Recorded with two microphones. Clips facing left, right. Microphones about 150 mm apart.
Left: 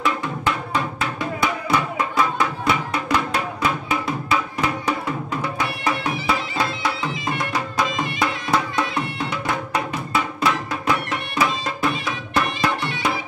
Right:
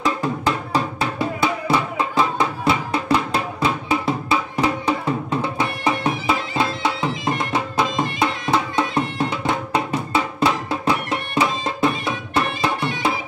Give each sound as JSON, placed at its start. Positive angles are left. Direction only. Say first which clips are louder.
{"t": 0.0, "sound": "music", "louder": "right 2 dB", "side_deg": -35}